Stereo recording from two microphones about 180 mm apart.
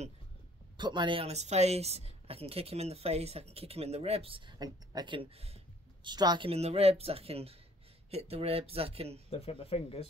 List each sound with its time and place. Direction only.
0.7 s speech: 25° right (ahead or behind)
6.0 s speech: 25° right (ahead or behind)
9.3 s speech: 30° left (ahead or behind)